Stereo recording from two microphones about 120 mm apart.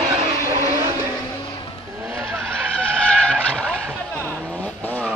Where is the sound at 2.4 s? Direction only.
10° left (ahead or behind).